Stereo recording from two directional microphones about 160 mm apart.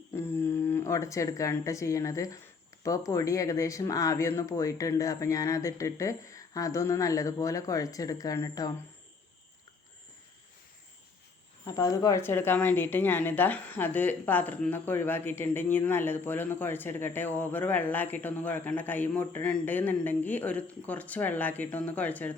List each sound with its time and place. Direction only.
0.1 s speech: 15° left (ahead or behind)
11.6 s a woman's voice: 20° left (ahead or behind)